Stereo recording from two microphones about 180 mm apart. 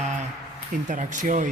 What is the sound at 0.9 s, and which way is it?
Speech, 45° right (ahead or behind).